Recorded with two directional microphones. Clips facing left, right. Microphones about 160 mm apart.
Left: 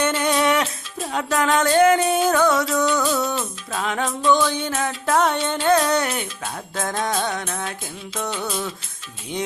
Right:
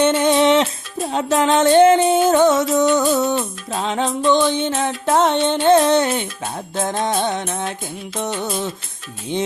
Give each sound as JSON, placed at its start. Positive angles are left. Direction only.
{"t": 0.0, "sound": "music", "side_deg": -25}